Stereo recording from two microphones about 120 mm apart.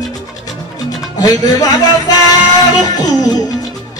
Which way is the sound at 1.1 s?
30° left (ahead or behind).